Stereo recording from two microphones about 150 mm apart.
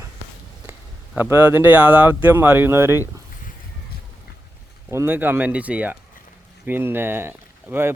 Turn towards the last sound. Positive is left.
turn(degrees=-15)  # may be behind; listen again after turning